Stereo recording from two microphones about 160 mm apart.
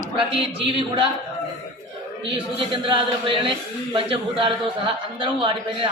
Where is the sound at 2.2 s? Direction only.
30° right (ahead or behind).